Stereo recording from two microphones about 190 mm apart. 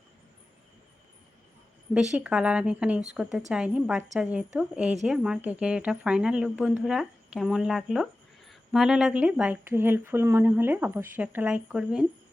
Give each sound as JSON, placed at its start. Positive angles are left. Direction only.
{"t": 2.1, "sound": "a woman's voice", "side_deg": -5}